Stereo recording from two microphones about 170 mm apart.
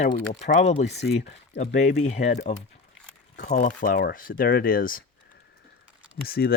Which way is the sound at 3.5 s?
50° left (ahead or behind).